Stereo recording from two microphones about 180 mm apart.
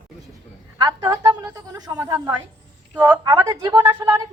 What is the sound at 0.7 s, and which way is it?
A woman's voice, 25° right (ahead or behind).